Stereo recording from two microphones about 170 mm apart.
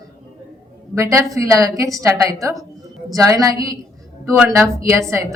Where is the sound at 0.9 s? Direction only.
15° right (ahead or behind).